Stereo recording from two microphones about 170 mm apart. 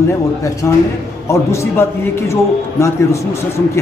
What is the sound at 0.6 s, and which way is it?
A man's voice, 15° left (ahead or behind).